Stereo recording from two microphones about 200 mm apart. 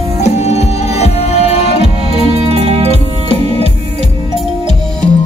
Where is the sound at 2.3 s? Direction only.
30° right (ahead or behind).